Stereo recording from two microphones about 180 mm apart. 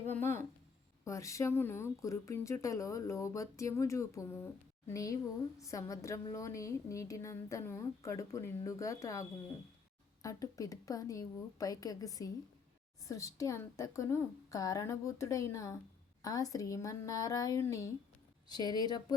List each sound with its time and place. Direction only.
0.1 s speech: 15° left (ahead or behind)
10.2 s a woman's voice: 20° left (ahead or behind)